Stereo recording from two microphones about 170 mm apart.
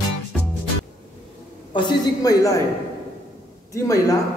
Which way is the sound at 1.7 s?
25° left (ahead or behind).